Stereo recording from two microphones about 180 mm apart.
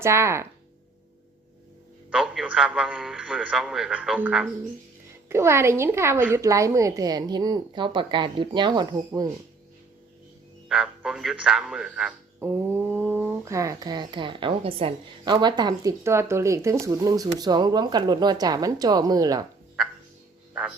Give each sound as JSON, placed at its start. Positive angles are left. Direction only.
{"t": 0.0, "sound": "speech", "side_deg": -15}
{"t": 2.0, "sound": "a man's voice", "side_deg": -5}
{"t": 5.3, "sound": "speech", "side_deg": -15}
{"t": 10.7, "sound": "a man's voice", "side_deg": 0}
{"t": 20.5, "sound": "a sound", "side_deg": -5}